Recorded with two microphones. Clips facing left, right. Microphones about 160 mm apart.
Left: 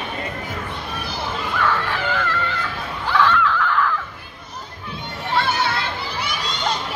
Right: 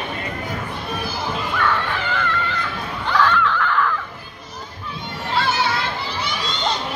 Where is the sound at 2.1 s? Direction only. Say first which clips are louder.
Right 1 dB; centre (ahead or behind).